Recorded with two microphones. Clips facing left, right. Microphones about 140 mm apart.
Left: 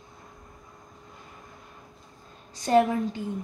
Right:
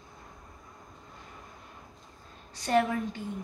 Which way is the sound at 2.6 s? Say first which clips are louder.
Left 5 dB; 20° left (ahead or behind).